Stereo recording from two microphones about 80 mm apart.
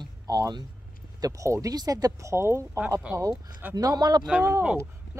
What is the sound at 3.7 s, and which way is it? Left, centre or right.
Speech, right.